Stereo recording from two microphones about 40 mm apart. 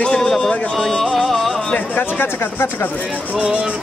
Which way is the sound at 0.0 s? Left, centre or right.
Centre.